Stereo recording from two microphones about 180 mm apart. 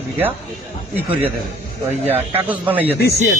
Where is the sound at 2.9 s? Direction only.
55° left (ahead or behind).